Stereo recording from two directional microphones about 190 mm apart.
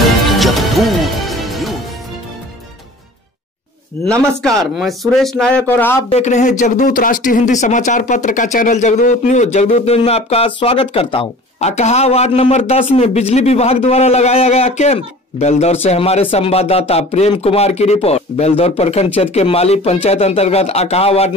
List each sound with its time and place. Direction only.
0.4 s music: centre (ahead or behind)
4.0 s a man's voice: 5° left (ahead or behind)
6.0 s speech: 35° left (ahead or behind)